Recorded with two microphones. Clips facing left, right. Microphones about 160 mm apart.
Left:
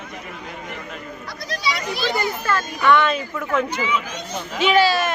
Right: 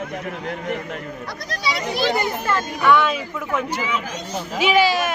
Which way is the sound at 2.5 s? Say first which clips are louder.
Right 1 dB; 20° right (ahead or behind).